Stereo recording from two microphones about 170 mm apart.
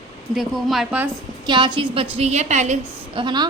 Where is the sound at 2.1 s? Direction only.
40° right (ahead or behind).